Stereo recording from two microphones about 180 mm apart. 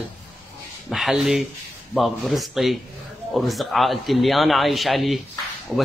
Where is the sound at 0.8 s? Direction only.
Centre (ahead or behind).